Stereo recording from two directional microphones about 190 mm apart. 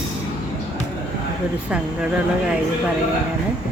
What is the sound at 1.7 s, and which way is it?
Speech, 5° right (ahead or behind).